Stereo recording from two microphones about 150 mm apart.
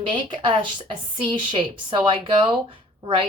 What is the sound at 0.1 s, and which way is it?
A woman's voice, 35° right (ahead or behind).